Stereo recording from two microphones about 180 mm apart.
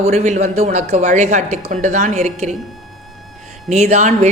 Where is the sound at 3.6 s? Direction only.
40° right (ahead or behind).